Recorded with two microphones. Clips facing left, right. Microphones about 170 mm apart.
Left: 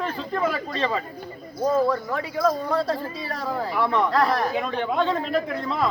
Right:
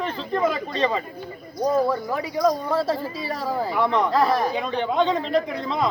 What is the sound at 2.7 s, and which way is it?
Speech, centre (ahead or behind).